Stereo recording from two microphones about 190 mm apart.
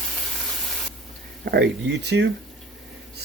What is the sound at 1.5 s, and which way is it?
Speech, 65° right (ahead or behind).